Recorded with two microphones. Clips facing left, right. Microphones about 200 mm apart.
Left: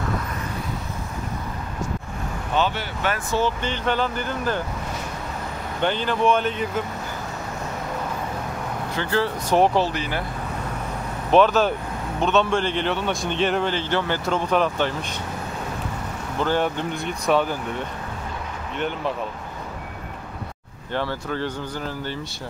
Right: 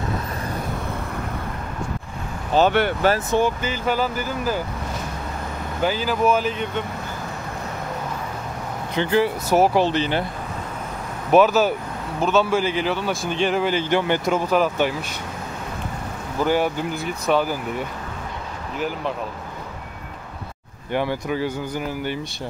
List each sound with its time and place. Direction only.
2.5 s speech: 35° right (ahead or behind)
3.3 s speech: 15° right (ahead or behind)
5.8 s a man's voice: 5° right (ahead or behind)
8.9 s speech: 15° right (ahead or behind)
9.8 s speech: 25° right (ahead or behind)
11.3 s a man's voice: 5° right (ahead or behind)
16.3 s a man's voice: 10° right (ahead or behind)
20.9 s speech: 15° right (ahead or behind)